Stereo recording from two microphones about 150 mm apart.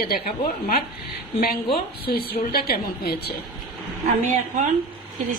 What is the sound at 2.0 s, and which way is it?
A woman's voice, 90° left.